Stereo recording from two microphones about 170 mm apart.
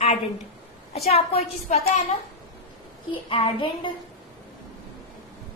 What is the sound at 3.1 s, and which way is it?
Speech, 30° left (ahead or behind).